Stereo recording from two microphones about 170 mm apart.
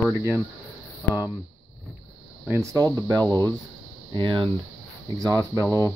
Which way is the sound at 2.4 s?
15° right (ahead or behind).